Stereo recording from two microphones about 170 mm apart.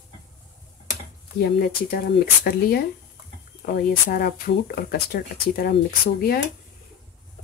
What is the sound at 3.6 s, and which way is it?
Speech, 60° left (ahead or behind).